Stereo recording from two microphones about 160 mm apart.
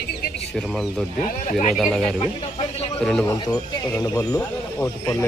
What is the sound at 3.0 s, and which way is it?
Speech, 5° left (ahead or behind).